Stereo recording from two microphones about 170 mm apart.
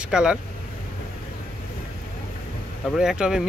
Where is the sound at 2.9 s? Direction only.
5° right (ahead or behind).